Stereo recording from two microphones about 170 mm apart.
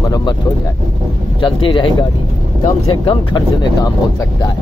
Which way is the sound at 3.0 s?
25° left (ahead or behind).